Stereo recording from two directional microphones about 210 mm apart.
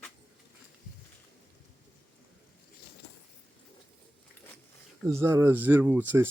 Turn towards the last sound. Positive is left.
turn(degrees=-10)  # may be behind; listen again after turning